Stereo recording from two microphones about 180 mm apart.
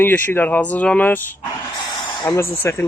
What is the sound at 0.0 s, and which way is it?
Speech, 10° left (ahead or behind).